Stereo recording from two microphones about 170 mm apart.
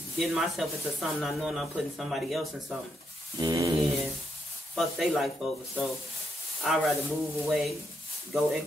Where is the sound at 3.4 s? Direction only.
20° right (ahead or behind).